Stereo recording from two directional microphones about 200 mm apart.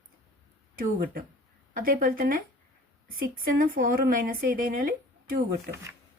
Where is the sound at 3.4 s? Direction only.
45° right (ahead or behind).